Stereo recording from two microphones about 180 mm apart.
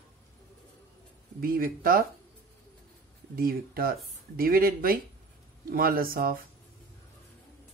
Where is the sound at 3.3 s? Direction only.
55° right (ahead or behind).